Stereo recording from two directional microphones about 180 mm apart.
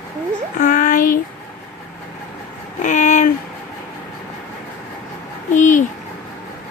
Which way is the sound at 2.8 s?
40° left (ahead or behind).